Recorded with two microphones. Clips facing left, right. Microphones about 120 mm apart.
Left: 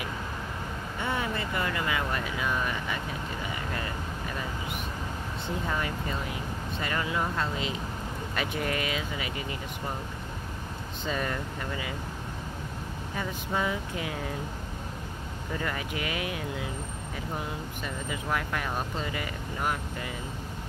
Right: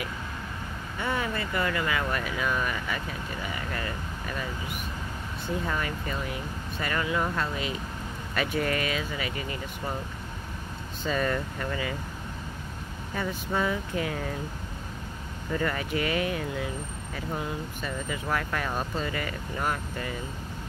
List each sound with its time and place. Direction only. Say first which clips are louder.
1.0 s speech: right 1 dB; 20° left (ahead or behind)
5.7 s speech: even; 20° left (ahead or behind)
11.1 s speech: right 4 dB; 15° left (ahead or behind)
13.1 s speech: right 2 dB; 10° left (ahead or behind)
15.5 s speech: right 5 dB; 10° left (ahead or behind)
17.8 s speech: right 1 dB; 15° left (ahead or behind)